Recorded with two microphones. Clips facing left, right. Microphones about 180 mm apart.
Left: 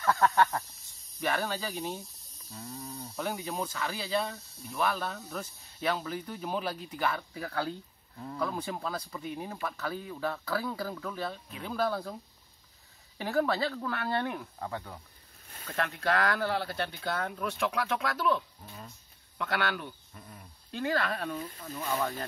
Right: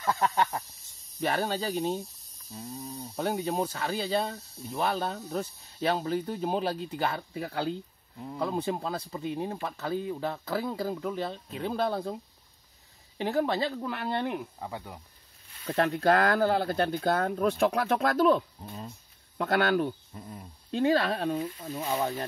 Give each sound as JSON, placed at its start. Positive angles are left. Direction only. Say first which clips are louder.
{"t": 0.0, "sound": "speech", "louder": "left 2 dB", "side_deg": -15}
{"t": 1.2, "sound": "speech", "louder": "right 3 dB", "side_deg": -30}
{"t": 3.2, "sound": "speech", "louder": "right 5 dB", "side_deg": -35}
{"t": 8.5, "sound": "speech", "louder": "right 5 dB", "side_deg": -30}
{"t": 13.2, "sound": "speech", "louder": "right 1 dB", "side_deg": -20}
{"t": 15.6, "sound": "speech", "louder": "right 7 dB", "side_deg": -40}
{"t": 18.6, "sound": "speech", "louder": "right 6 dB", "side_deg": -25}
{"t": 19.3, "sound": "speech", "louder": "right 7 dB", "side_deg": -40}
{"t": 20.2, "sound": "speech", "louder": "right 7 dB", "side_deg": -30}